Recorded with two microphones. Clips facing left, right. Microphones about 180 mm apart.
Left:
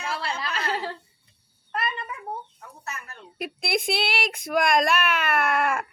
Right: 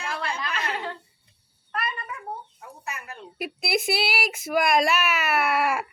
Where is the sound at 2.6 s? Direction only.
15° right (ahead or behind).